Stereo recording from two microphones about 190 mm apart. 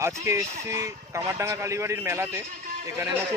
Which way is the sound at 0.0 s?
15° right (ahead or behind).